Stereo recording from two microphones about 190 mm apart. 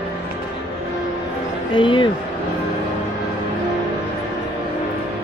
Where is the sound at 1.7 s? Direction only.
25° left (ahead or behind).